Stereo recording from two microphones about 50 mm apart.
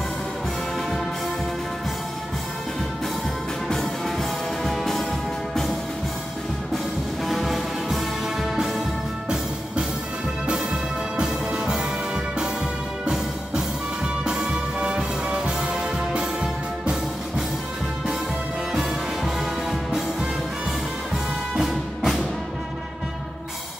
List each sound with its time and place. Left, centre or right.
3.6 s music: centre
7.2 s music: centre
10.4 s music: centre
14.0 s music: centre
18.7 s music: centre
21.5 s music: centre